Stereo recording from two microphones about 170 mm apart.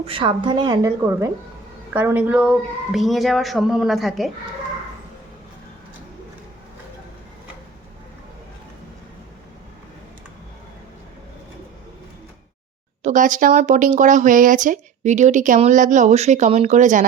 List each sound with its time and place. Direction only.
0.0 s a woman's voice: 30° right (ahead or behind); by 4.3 s centre (ahead or behind)
13.0 s speech: 45° right (ahead or behind)